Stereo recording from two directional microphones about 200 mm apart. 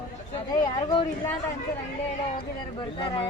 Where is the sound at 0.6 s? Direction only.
25° left (ahead or behind).